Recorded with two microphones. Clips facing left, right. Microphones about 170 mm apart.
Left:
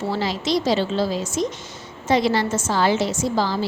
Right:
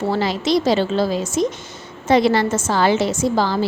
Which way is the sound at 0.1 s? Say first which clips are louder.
Right 4 dB; 55° right (ahead or behind).